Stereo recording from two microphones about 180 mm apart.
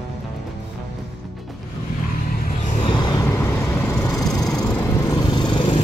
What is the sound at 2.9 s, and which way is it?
Vehicle, 25° left (ahead or behind).